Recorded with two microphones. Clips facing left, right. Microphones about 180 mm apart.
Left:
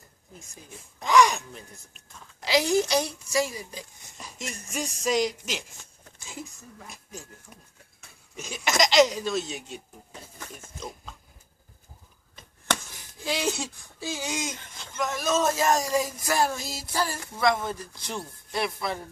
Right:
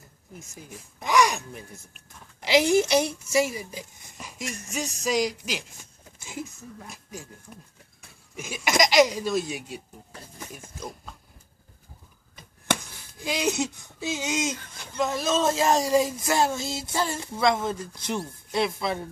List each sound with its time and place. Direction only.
0.9 s a sound: 15° right (ahead or behind)
2.4 s speech: 15° right (ahead or behind)
4.5 s music: 35° left (ahead or behind)
4.7 s music: 5° right (ahead or behind)
6.8 s music: 5° right (ahead or behind)
8.4 s speech: 10° right (ahead or behind)
13.2 s speech: 15° right (ahead or behind)